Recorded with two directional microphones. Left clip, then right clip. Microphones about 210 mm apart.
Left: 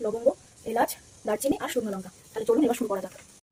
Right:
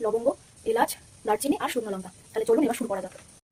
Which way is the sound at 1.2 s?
40° right (ahead or behind).